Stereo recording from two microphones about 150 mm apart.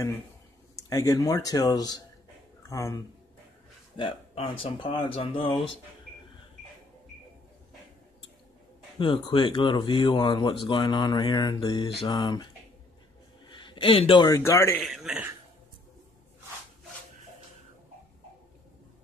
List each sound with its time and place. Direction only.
0.8 s speech: 20° left (ahead or behind)
3.9 s speech: 35° left (ahead or behind)
8.9 s speech: 30° left (ahead or behind)
13.5 s a man's voice: 30° left (ahead or behind)
14.8 s a man's voice: centre (ahead or behind)